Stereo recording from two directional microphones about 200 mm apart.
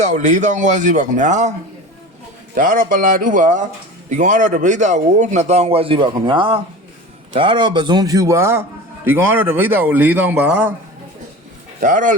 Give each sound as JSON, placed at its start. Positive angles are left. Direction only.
{"t": 0.0, "sound": "a man's voice", "side_deg": -35}
{"t": 2.6, "sound": "a man's voice", "side_deg": -45}
{"t": 11.8, "sound": "a man's voice", "side_deg": -40}